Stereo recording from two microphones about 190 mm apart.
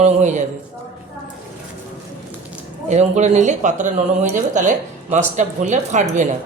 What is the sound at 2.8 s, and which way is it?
Speech, 35° right (ahead or behind).